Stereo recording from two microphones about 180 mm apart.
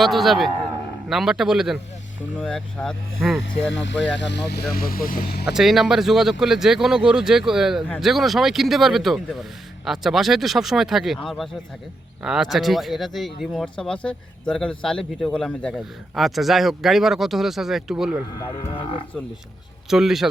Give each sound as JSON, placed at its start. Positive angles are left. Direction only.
{"t": 0.0, "sound": "speech", "side_deg": 0}
{"t": 3.7, "sound": "speech", "side_deg": 90}
{"t": 4.2, "sound": "speech", "side_deg": 70}
{"t": 4.7, "sound": "speech", "side_deg": 55}
{"t": 5.5, "sound": "speech", "side_deg": 0}
{"t": 19.9, "sound": "speech", "side_deg": 0}